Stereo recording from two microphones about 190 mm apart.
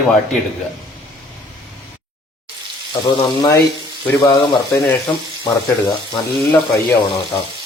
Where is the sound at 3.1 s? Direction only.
20° left (ahead or behind).